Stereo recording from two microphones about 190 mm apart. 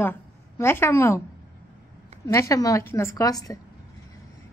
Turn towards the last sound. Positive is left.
turn(degrees=20)  # may be behind; listen again after turning